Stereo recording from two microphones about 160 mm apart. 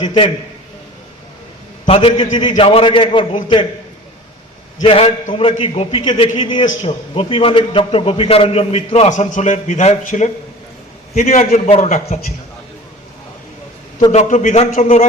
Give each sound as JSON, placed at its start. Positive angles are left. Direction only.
{"t": 0.0, "sound": "a man's voice", "side_deg": 30}
{"t": 1.9, "sound": "a man's voice", "side_deg": 35}
{"t": 4.8, "sound": "a man's voice", "side_deg": 35}
{"t": 14.1, "sound": "a man's voice", "side_deg": 45}